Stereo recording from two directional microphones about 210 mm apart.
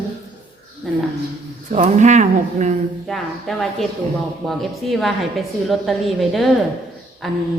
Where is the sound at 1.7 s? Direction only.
35° right (ahead or behind).